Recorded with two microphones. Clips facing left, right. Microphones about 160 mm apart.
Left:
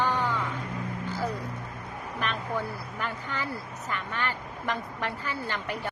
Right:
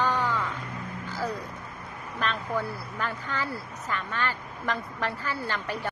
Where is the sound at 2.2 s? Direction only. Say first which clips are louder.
Right 2 dB; 15° left (ahead or behind).